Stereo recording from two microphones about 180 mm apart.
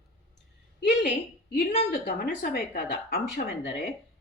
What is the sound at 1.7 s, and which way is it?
Speech, 45° left (ahead or behind).